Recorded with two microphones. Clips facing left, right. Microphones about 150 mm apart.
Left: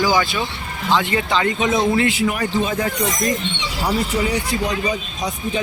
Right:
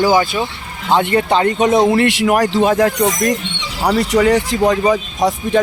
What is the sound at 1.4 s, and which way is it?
Speech, 40° right (ahead or behind).